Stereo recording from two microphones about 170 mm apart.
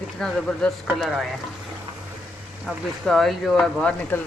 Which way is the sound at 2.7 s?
Centre (ahead or behind).